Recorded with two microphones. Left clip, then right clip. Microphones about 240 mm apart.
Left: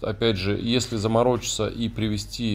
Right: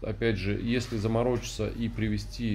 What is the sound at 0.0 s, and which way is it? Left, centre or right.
Speech, left.